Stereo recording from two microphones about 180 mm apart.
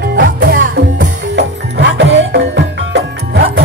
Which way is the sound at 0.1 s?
65° right (ahead or behind).